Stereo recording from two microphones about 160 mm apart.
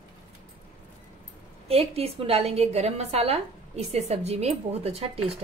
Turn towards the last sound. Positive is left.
turn(degrees=-40)  # may be behind; listen again after turning